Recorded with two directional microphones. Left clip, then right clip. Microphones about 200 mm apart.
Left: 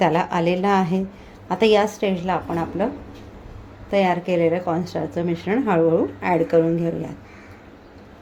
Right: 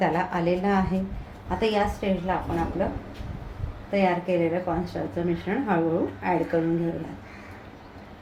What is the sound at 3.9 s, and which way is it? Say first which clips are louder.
A woman's voice: left 4 dB; 55° left (ahead or behind).